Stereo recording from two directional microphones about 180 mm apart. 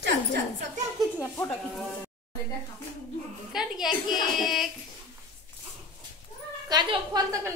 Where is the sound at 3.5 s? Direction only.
5° right (ahead or behind).